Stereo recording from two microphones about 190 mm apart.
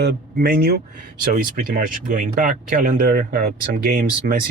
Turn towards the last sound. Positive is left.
turn(degrees=-50)  # may be behind; listen again after turning